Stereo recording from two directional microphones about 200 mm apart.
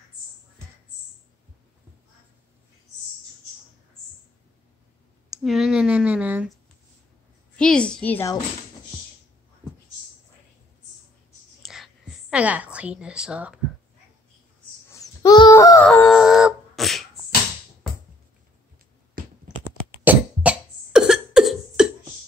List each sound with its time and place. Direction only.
5.3 s speech: centre (ahead or behind)
7.5 s a woman's voice: 5° left (ahead or behind)
11.6 s a sound: centre (ahead or behind)
14.9 s wail: 15° left (ahead or behind)
15.9 s beatboxing: 5° left (ahead or behind)
19.2 s computer keyboard: 45° right (ahead or behind)
20.1 s cough: 5° right (ahead or behind)